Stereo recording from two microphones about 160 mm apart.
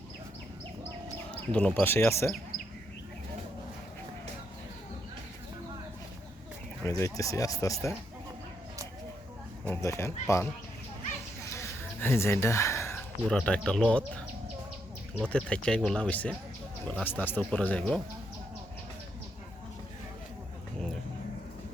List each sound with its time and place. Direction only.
1.3 s a sound: 10° left (ahead or behind)
1.8 s speech: 15° left (ahead or behind)
2.5 s bird: 60° left (ahead or behind)
6.8 s speech: 20° left (ahead or behind)
9.8 s speech: 20° left (ahead or behind)
11.5 s a sound: 15° left (ahead or behind)
15.3 s speech: 5° left (ahead or behind)